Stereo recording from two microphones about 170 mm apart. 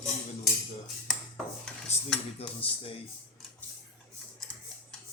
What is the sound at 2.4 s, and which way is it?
Speech, 35° left (ahead or behind).